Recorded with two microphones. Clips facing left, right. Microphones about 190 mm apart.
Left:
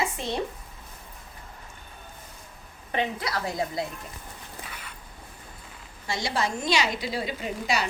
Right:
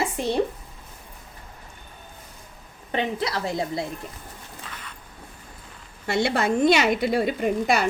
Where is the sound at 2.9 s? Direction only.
25° right (ahead or behind).